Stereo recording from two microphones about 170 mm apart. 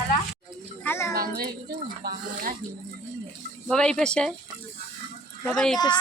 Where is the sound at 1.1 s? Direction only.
65° right (ahead or behind).